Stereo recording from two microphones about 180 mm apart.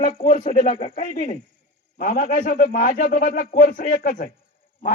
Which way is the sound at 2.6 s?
55° left (ahead or behind).